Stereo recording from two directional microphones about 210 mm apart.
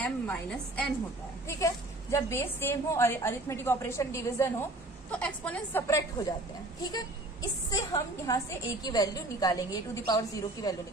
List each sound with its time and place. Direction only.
0.0 s a woman's voice: 5° left (ahead or behind)